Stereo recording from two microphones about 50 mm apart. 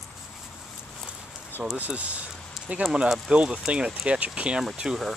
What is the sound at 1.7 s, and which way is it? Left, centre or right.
Speech, right.